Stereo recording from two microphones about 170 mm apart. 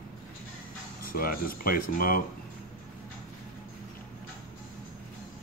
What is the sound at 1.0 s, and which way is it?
Speech, 60° left (ahead or behind).